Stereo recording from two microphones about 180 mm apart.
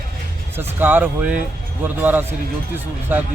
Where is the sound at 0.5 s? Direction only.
10° right (ahead or behind).